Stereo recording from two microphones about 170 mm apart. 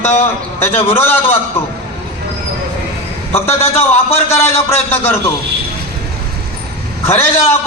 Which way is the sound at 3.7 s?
40° left (ahead or behind).